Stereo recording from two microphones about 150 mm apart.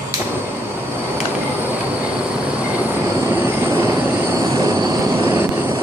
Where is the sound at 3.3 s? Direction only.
15° right (ahead or behind).